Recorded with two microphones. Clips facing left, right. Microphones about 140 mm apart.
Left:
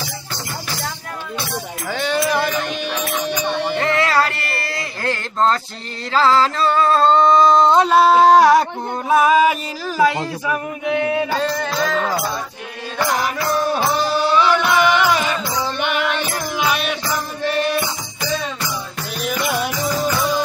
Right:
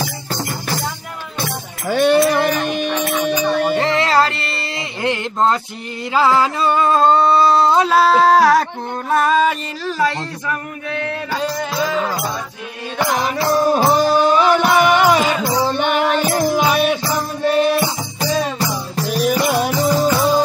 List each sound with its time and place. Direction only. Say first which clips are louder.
1.9 s music: right 7 dB; 60° right (ahead or behind)
3.8 s a sound: right 2 dB; 30° right (ahead or behind); by 11.2 s 15° left (ahead or behind)
11.4 s music: even; 10° right (ahead or behind)
13.6 s music: right 6 dB; 40° right (ahead or behind)